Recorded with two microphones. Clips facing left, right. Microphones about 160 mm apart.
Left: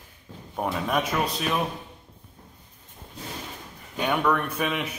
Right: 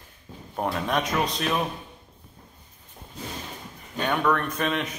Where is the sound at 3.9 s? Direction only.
10° left (ahead or behind).